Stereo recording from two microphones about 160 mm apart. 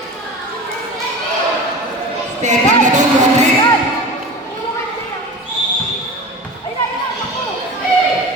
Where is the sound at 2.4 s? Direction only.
50° right (ahead or behind).